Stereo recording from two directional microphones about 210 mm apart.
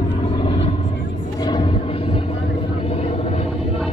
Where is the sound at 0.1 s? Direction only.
25° left (ahead or behind).